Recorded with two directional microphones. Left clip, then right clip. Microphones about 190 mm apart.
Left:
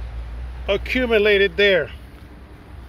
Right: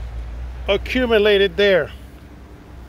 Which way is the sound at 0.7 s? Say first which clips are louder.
Right 2 dB; 5° right (ahead or behind).